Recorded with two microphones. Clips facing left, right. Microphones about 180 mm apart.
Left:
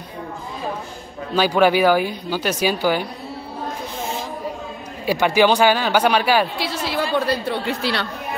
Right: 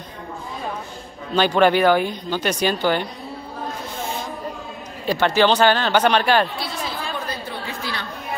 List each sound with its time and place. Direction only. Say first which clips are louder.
1.3 s speech: even; 5° left (ahead or behind)
5.0 s speech: left 1 dB; 10° left (ahead or behind)
6.8 s chatter: left 11 dB; 75° left (ahead or behind)